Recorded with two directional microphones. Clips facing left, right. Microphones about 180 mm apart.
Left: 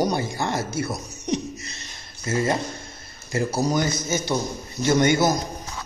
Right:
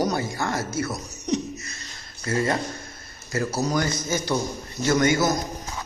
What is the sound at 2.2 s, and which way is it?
Speech, 20° left (ahead or behind).